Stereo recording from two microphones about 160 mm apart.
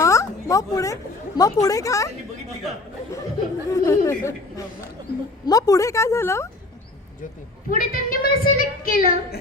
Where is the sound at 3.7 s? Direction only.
20° left (ahead or behind).